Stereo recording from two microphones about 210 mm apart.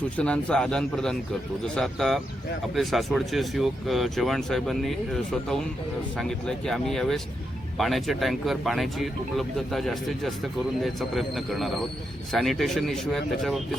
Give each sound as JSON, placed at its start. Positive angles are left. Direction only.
{"t": 0.2, "sound": "speech", "side_deg": 5}